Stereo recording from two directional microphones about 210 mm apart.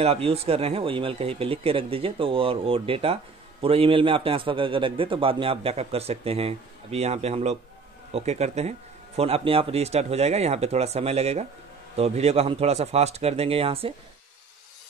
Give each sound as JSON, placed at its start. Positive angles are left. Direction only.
{"t": 0.0, "sound": "a man's voice", "side_deg": -30}